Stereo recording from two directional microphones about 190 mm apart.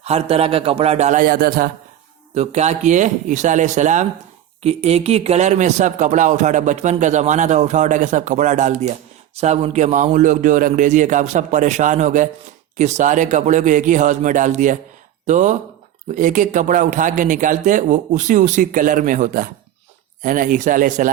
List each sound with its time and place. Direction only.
0.0 s speech: 35° right (ahead or behind); by 1.7 s 50° right (ahead or behind)
2.3 s a man's voice: 35° right (ahead or behind)